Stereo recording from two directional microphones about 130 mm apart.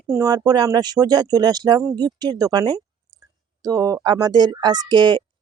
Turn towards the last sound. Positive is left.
turn(degrees=-35)  # may be behind; listen again after turning